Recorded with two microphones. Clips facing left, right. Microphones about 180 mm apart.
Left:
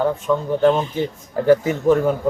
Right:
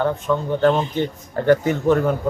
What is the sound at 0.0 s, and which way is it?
A man's voice, 5° left (ahead or behind).